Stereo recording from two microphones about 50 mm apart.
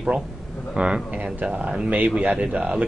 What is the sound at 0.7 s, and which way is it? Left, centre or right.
Speech, centre.